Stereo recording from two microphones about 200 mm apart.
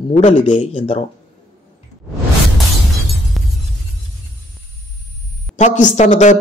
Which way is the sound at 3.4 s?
Centre (ahead or behind).